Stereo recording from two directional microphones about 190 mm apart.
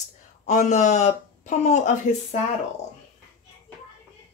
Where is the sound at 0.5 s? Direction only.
40° left (ahead or behind).